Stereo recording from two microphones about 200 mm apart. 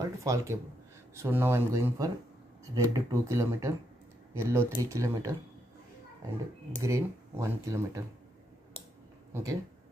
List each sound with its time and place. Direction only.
0.0 s speech: 15° right (ahead or behind)
6.8 s speech: 15° right (ahead or behind)
9.3 s speech: 15° right (ahead or behind)